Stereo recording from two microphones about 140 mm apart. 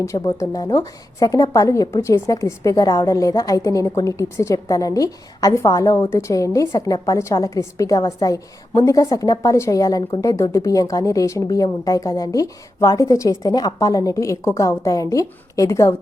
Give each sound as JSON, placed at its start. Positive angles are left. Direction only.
{"t": 0.0, "sound": "a woman's voice", "side_deg": 25}